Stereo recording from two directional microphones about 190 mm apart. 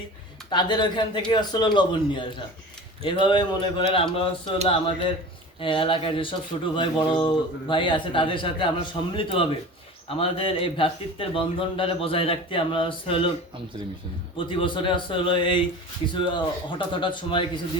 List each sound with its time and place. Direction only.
0.5 s a man's voice: 25° left (ahead or behind)
4.5 s speech: 35° right (ahead or behind)
5.5 s a man's voice: 30° left (ahead or behind)
14.3 s a man's voice: 25° left (ahead or behind)